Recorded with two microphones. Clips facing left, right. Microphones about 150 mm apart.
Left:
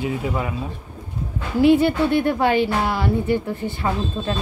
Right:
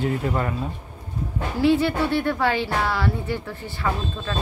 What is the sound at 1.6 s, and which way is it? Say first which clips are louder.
Speech: left 4 dB; 15° left (ahead or behind).